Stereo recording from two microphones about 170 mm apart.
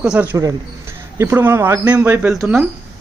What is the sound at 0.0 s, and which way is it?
A man's voice, 5° right (ahead or behind).